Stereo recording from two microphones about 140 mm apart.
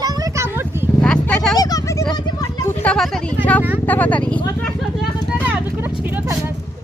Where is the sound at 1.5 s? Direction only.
25° left (ahead or behind).